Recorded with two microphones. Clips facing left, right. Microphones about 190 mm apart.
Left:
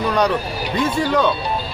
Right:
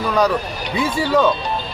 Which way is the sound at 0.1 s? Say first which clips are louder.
Right 3 dB; centre (ahead or behind).